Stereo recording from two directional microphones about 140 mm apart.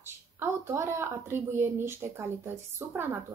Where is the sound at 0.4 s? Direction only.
20° right (ahead or behind).